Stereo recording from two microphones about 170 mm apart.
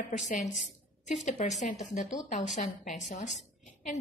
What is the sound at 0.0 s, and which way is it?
A woman's voice, 45° left (ahead or behind).